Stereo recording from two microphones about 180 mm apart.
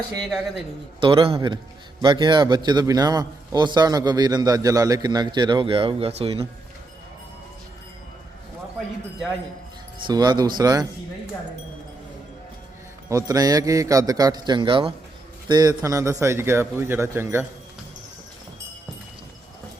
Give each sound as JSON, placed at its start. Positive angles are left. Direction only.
{"t": 1.0, "sound": "a man's voice", "side_deg": -30}
{"t": 10.1, "sound": "a man's voice", "side_deg": -20}
{"t": 13.1, "sound": "a man's voice", "side_deg": -20}